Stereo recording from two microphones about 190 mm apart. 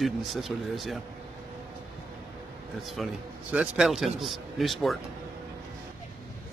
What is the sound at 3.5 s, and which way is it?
Speech, 5° right (ahead or behind).